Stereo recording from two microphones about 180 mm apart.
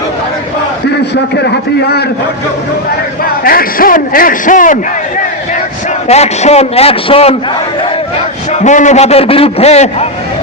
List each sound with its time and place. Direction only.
3.4 s a man's voice: 55° left (ahead or behind)
6.1 s a man's voice: 35° left (ahead or behind)
8.6 s a man's voice: 40° left (ahead or behind)